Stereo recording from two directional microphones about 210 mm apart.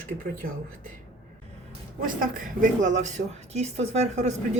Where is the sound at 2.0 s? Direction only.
40° right (ahead or behind).